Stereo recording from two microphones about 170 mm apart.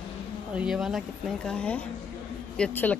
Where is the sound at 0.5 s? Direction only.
5° right (ahead or behind).